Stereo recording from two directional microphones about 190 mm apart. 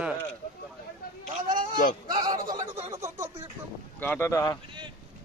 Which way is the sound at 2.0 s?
20° right (ahead or behind).